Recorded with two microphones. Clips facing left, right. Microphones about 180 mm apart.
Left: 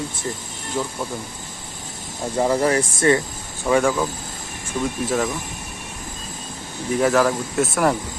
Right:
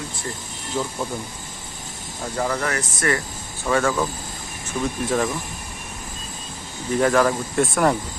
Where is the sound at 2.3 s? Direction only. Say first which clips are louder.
Left 6 dB; 25° left (ahead or behind).